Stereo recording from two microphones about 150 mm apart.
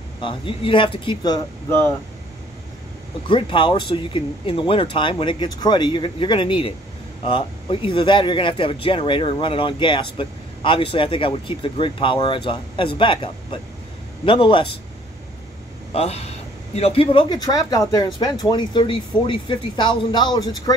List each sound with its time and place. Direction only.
0.2 s speech: 35° left (ahead or behind)
1.7 s speech: 15° left (ahead or behind)
3.3 s speech: 35° left (ahead or behind)
15.9 s speech: 45° left (ahead or behind); by 20.7 s 25° left (ahead or behind)